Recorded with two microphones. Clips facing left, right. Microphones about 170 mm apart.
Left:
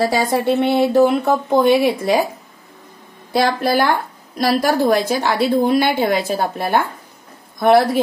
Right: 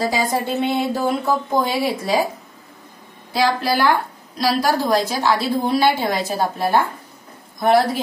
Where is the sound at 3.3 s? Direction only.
55° left (ahead or behind).